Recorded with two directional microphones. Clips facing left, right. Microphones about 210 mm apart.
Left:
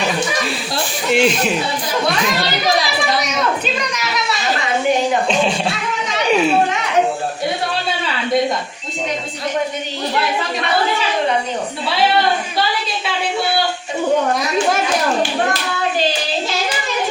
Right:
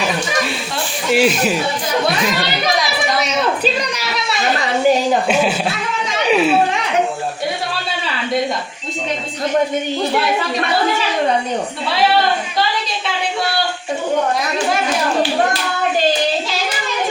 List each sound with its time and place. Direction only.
1.1 s speech: 5° right (ahead or behind)
3.2 s a sound: 35° right (ahead or behind)
5.3 s speech: 5° right (ahead or behind)